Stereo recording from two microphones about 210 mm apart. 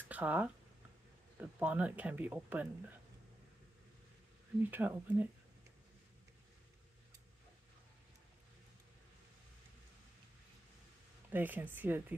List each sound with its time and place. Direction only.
0.1 s speech: 5° right (ahead or behind)
4.6 s speech: 10° right (ahead or behind)
11.3 s speech: 10° right (ahead or behind)